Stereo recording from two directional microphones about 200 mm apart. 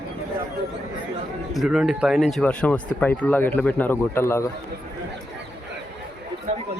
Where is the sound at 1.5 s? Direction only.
Centre (ahead or behind).